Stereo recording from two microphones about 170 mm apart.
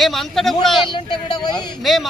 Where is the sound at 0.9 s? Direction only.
25° left (ahead or behind).